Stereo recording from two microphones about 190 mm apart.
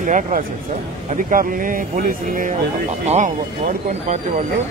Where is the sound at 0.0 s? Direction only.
45° right (ahead or behind).